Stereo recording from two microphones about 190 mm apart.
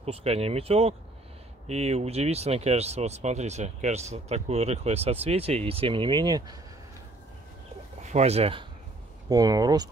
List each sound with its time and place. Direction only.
0.0 s speech: 30° right (ahead or behind)
8.0 s speech: 35° right (ahead or behind)
9.3 s speech: 20° right (ahead or behind)